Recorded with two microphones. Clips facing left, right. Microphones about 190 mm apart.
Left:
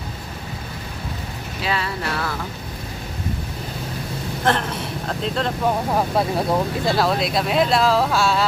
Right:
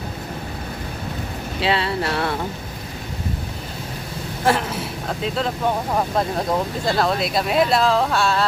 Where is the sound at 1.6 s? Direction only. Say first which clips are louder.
Right 4 dB; 30° right (ahead or behind).